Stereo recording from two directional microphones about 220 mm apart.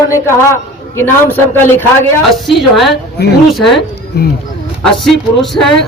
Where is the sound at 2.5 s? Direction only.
Centre (ahead or behind).